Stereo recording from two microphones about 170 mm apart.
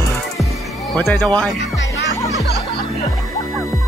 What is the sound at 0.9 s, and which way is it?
Speech, 5° left (ahead or behind).